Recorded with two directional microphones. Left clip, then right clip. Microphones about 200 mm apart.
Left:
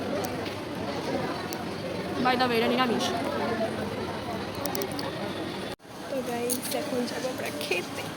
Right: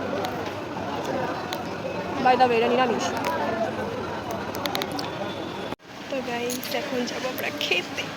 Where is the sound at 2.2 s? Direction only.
35° left (ahead or behind).